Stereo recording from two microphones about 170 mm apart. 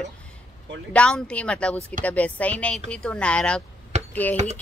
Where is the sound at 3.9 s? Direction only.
40° right (ahead or behind).